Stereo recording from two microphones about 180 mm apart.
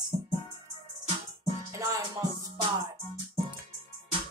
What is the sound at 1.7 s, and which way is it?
Music, 15° right (ahead or behind).